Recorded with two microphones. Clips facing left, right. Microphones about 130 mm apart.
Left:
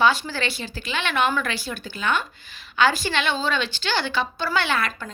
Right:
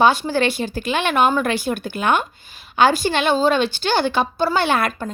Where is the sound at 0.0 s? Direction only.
50° right (ahead or behind).